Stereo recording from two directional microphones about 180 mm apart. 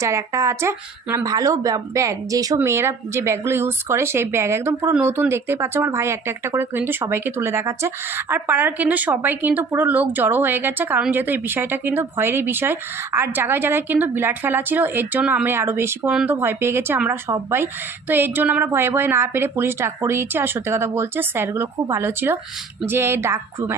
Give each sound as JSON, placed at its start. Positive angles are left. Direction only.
{"t": 0.0, "sound": "speech", "side_deg": -15}